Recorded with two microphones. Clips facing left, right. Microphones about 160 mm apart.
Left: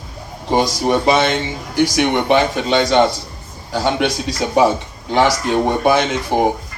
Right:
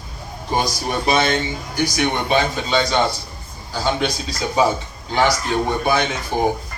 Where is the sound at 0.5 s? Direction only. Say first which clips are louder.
Left 6 dB; 85° left; by 4.6 s 70° left (ahead or behind).